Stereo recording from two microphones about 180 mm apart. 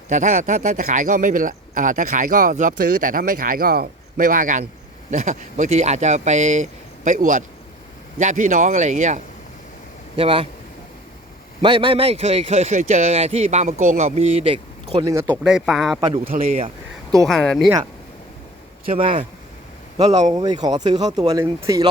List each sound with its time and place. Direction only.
0.1 s speech: 40° right (ahead or behind)
10.2 s speech: 30° right (ahead or behind)
11.6 s speech: 30° right (ahead or behind)
15.0 s speech: 20° right (ahead or behind)
15.4 s speech: centre (ahead or behind)
16.3 s speech: 45° right (ahead or behind)
17.2 s speech: 5° left (ahead or behind)
18.9 s speech: 30° right (ahead or behind)
20.3 s speech: 20° right (ahead or behind)